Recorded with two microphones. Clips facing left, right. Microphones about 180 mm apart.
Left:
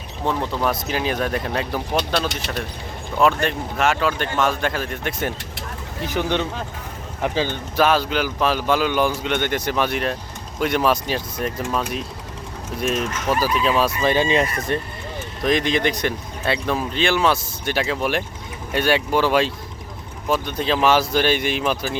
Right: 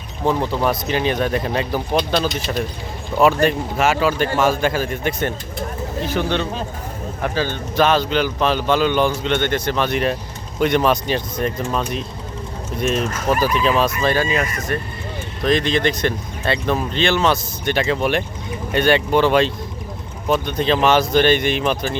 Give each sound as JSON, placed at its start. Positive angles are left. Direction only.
{"t": 0.3, "sound": "speech", "side_deg": 0}
{"t": 3.2, "sound": "speech", "side_deg": -5}
{"t": 6.0, "sound": "speech", "side_deg": 15}
{"t": 13.0, "sound": "speech", "side_deg": -30}
{"t": 13.4, "sound": "speech", "side_deg": 5}
{"t": 14.0, "sound": "speech", "side_deg": 20}
{"t": 15.4, "sound": "speech", "side_deg": 15}